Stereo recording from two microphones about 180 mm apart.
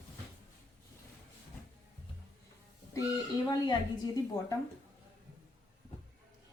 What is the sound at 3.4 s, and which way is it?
Speech, 25° left (ahead or behind).